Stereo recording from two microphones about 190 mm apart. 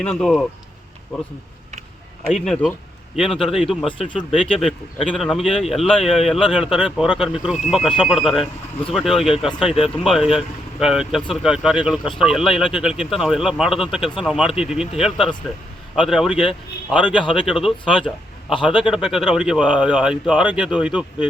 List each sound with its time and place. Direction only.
0.0 s speech: 5° left (ahead or behind)
3.8 s speech: 25° left (ahead or behind)
5.1 s speech: centre (ahead or behind)